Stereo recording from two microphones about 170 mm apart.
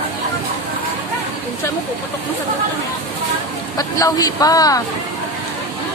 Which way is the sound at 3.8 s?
20° left (ahead or behind).